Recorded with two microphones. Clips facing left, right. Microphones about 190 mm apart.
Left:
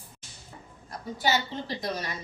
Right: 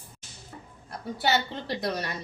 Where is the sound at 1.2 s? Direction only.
65° right (ahead or behind).